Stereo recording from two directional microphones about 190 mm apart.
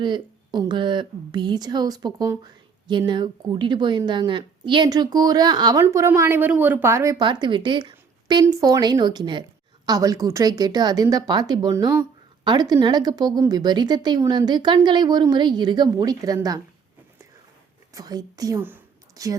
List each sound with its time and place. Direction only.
0.0 s a woman's voice: 25° right (ahead or behind)
17.9 s a woman's voice: 20° right (ahead or behind)